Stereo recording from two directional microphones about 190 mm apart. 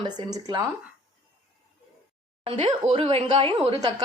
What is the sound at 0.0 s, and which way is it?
Speech, 25° right (ahead or behind).